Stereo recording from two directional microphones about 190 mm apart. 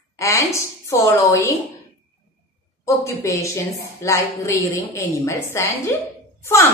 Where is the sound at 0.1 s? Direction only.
15° left (ahead or behind).